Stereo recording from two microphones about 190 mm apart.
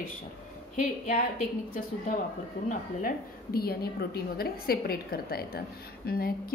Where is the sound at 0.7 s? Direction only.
45° left (ahead or behind).